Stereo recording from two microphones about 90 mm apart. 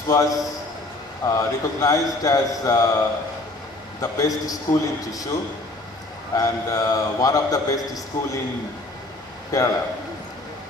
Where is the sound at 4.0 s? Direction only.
40° left (ahead or behind).